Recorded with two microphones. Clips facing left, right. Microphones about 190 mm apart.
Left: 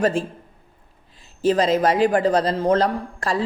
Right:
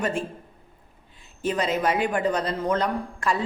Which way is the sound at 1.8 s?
35° left (ahead or behind).